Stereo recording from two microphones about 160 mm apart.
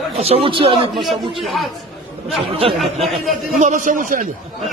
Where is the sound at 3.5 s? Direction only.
55° right (ahead or behind).